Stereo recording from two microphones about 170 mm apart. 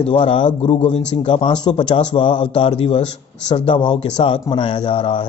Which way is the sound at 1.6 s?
25° left (ahead or behind).